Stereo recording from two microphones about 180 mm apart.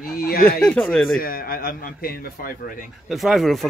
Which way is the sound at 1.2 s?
55° left (ahead or behind).